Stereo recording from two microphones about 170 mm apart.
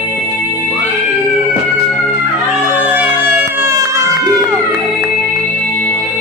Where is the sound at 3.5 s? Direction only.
15° right (ahead or behind).